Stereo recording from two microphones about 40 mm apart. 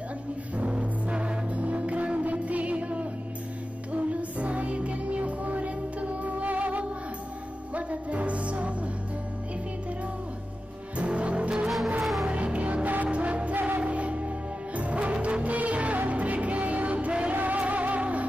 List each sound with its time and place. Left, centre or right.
0.6 s music: right
11.0 s music: right
12.0 s music: centre
12.3 s music: right
17.3 s music: right